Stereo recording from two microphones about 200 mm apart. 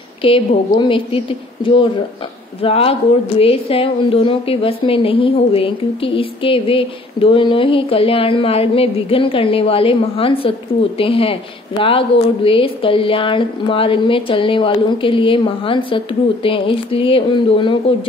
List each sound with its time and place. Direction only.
0.2 s a woman's voice: 25° left (ahead or behind)
12.4 s a woman's voice: 25° left (ahead or behind)